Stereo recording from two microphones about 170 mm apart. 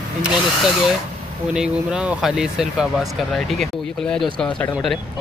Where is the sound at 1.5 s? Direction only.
5° right (ahead or behind).